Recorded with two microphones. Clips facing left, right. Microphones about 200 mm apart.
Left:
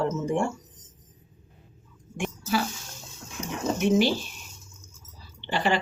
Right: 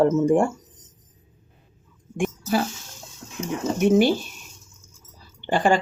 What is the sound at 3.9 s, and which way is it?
Speech, 50° right (ahead or behind).